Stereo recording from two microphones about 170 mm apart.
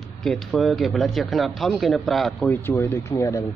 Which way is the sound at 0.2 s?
5° left (ahead or behind).